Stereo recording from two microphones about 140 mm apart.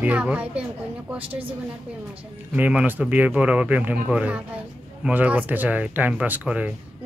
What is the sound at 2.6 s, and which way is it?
Speech, 10° right (ahead or behind).